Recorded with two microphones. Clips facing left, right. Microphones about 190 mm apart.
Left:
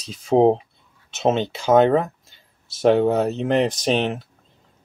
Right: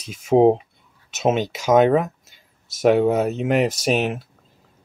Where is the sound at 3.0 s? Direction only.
10° right (ahead or behind).